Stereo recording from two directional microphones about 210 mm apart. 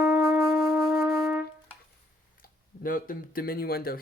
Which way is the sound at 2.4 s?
40° left (ahead or behind).